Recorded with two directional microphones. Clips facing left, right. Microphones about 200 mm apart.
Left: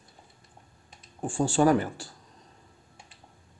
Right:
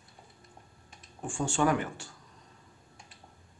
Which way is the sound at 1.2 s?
35° left (ahead or behind).